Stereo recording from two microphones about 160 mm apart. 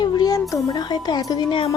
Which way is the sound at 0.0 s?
25° left (ahead or behind).